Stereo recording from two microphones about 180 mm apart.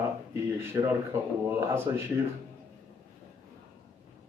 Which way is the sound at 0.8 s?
20° right (ahead or behind).